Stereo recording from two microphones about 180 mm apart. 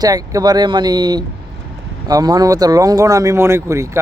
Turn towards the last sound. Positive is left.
turn(degrees=-15)  # may be behind; listen again after turning